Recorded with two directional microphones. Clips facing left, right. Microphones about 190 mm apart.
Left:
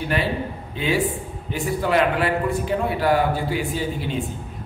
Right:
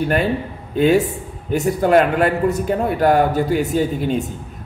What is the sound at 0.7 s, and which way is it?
A man's voice, 45° right (ahead or behind).